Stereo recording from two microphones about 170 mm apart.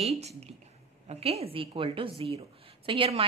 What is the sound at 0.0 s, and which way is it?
A woman's voice, 40° right (ahead or behind).